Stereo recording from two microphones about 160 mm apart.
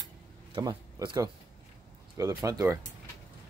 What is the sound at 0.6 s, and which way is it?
Speech, 25° right (ahead or behind).